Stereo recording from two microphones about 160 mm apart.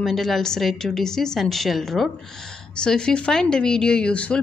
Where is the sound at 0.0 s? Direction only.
Centre (ahead or behind).